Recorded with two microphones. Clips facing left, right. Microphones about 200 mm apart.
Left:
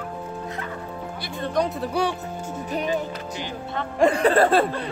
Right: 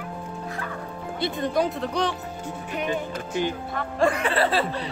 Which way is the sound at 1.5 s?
Centre (ahead or behind).